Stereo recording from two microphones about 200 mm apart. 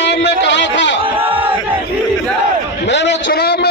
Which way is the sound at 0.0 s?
60° left (ahead or behind).